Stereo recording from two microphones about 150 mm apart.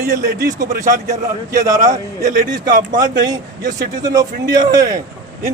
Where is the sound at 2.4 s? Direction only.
25° right (ahead or behind).